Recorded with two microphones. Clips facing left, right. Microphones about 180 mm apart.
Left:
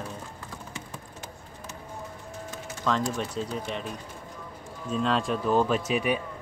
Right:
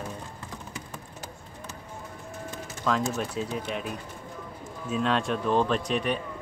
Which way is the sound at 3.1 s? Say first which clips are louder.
Right 1 dB; 5° right (ahead or behind).